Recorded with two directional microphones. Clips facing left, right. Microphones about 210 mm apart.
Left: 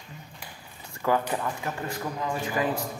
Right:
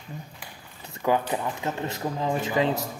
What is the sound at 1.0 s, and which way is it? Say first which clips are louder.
Speech: right 1 dB; 15° right (ahead or behind).